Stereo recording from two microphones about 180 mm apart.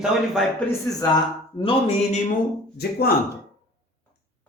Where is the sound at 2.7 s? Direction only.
60° left (ahead or behind).